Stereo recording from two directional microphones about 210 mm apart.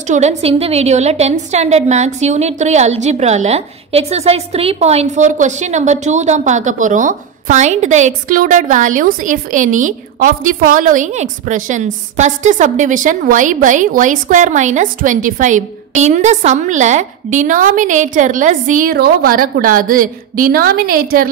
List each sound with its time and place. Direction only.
0.1 s a woman's voice: 35° right (ahead or behind)